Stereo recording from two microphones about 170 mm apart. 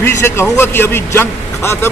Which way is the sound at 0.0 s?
15° left (ahead or behind).